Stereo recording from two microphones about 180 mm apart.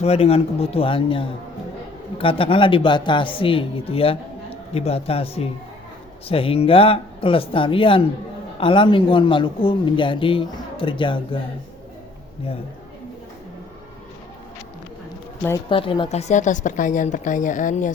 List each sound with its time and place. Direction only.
0.0 s a man's voice: 35° left (ahead or behind)
15.7 s a woman's voice: 30° left (ahead or behind); by 17.9 s 45° left (ahead or behind)